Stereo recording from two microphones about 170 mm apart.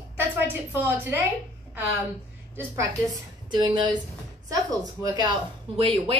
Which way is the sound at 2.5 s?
20° right (ahead or behind).